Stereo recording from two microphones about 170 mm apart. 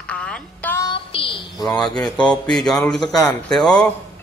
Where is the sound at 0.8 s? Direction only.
30° left (ahead or behind).